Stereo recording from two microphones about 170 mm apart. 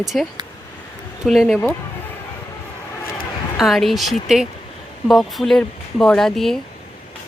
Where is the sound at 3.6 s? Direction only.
Centre (ahead or behind).